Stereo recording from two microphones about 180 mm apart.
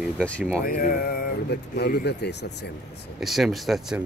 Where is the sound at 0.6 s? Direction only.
50° left (ahead or behind); by 2.7 s 70° left (ahead or behind).